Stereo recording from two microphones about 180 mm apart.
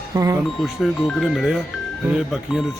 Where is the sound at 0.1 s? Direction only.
20° right (ahead or behind).